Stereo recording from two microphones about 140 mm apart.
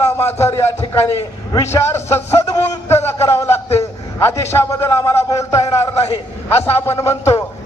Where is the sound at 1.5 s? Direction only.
20° left (ahead or behind).